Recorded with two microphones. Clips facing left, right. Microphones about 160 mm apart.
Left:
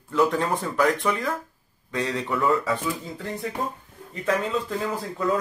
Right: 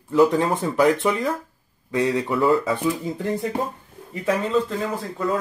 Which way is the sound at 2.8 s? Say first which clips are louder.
Right 6 dB; 20° right (ahead or behind).